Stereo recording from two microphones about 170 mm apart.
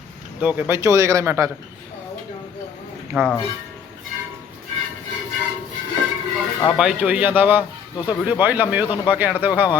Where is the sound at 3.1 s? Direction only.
5° right (ahead or behind).